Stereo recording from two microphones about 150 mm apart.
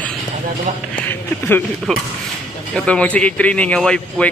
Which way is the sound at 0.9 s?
10° left (ahead or behind).